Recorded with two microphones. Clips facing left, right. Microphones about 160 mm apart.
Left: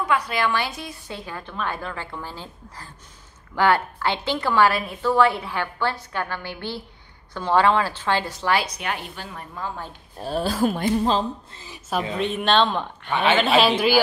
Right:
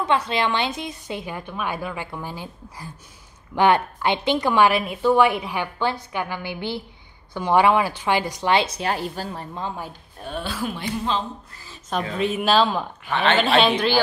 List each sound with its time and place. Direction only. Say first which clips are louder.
0.0 s a woman's voice: right 1 dB; 25° right (ahead or behind)
10.1 s speech: left 6 dB; 35° left (ahead or behind)
11.5 s a sound: left 2 dB; 15° left (ahead or behind)
12.1 s speech: right 2 dB; centre (ahead or behind)
13.1 s speech: even; 10° left (ahead or behind)